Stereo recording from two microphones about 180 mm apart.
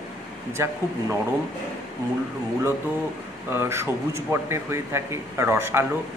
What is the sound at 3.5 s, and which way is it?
Speech, 15° right (ahead or behind).